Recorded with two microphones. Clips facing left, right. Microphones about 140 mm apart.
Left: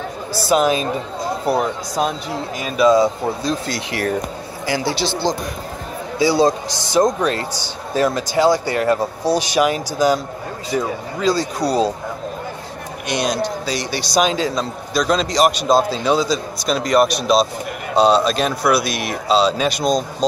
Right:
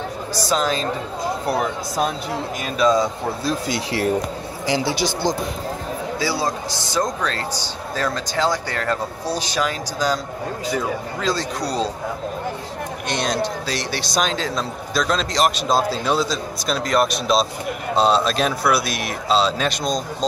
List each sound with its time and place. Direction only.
0.5 s speech: 10° left (ahead or behind)
2.8 s speech: 5° left (ahead or behind)
3.7 s speech: 25° right (ahead or behind)
6.1 s a man's voice: 20° left (ahead or behind); by 11.9 s 5° left (ahead or behind)
13.1 s a man's voice: 5° left (ahead or behind)